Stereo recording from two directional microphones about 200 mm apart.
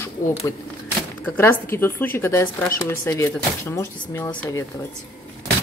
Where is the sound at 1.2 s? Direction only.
10° left (ahead or behind).